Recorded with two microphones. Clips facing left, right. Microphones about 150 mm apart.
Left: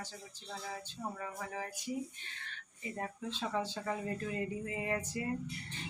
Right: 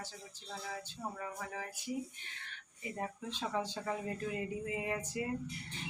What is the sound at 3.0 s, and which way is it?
Speech, 10° right (ahead or behind).